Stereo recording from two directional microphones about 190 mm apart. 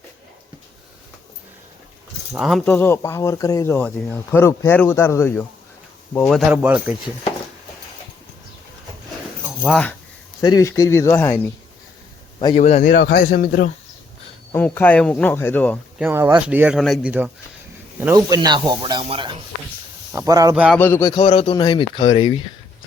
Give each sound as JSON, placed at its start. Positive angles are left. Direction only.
{"t": 2.3, "sound": "speech", "side_deg": 0}
{"t": 9.5, "sound": "speech", "side_deg": 0}
{"t": 10.4, "sound": "speech", "side_deg": 20}
{"t": 12.5, "sound": "speech", "side_deg": 35}
{"t": 12.9, "sound": "speech", "side_deg": 60}
{"t": 14.5, "sound": "speech", "side_deg": 10}
{"t": 16.0, "sound": "speech", "side_deg": -10}
{"t": 18.0, "sound": "speech", "side_deg": -20}
{"t": 20.7, "sound": "speech", "side_deg": 10}
{"t": 21.1, "sound": "speech", "side_deg": 25}